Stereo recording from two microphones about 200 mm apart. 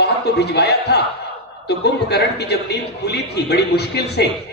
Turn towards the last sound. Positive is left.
turn(degrees=55)  # may be behind; listen again after turning